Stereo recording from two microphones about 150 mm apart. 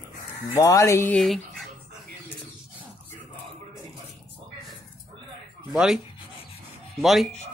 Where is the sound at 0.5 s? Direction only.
20° left (ahead or behind).